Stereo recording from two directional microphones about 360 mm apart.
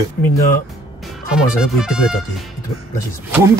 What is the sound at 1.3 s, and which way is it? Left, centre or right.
Speech, centre.